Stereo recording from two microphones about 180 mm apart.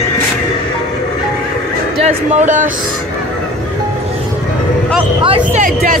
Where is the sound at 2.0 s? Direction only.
40° right (ahead or behind).